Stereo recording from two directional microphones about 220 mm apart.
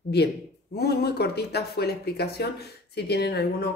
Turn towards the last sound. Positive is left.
turn(degrees=50)  # may be behind; listen again after turning